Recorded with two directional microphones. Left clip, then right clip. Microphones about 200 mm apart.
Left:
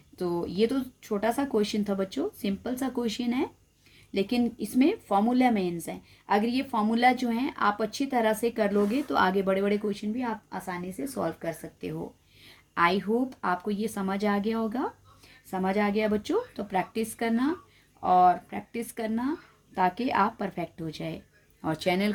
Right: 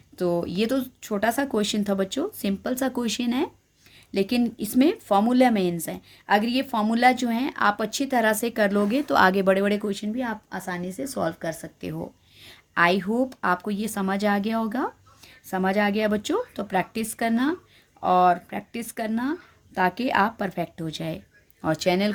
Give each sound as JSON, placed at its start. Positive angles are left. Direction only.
{"t": 0.2, "sound": "a woman's voice", "side_deg": -35}